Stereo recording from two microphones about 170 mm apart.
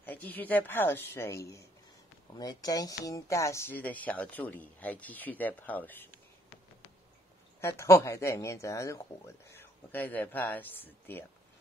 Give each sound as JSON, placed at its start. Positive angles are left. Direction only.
{"t": 0.0, "sound": "speech", "side_deg": 10}
{"t": 7.6, "sound": "speech", "side_deg": 15}